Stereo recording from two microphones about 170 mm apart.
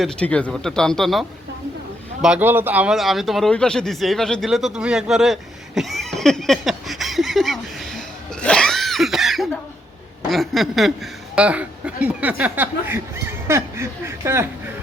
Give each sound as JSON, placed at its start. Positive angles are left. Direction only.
{"t": 0.0, "sound": "speech", "side_deg": 5}
{"t": 2.2, "sound": "a sound", "side_deg": -10}
{"t": 10.2, "sound": "speech", "side_deg": 0}